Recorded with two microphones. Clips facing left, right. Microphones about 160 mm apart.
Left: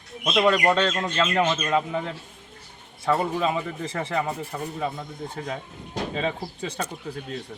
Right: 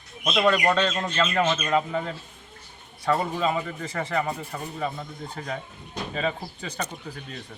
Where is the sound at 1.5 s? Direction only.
Centre (ahead or behind).